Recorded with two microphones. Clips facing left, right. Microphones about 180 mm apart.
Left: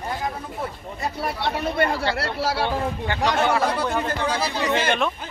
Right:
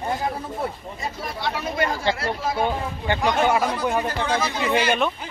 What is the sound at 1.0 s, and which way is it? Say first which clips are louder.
Speech: left 3 dB; 60° left (ahead or behind).